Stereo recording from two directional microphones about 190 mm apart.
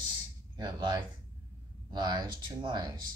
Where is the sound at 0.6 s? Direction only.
20° right (ahead or behind).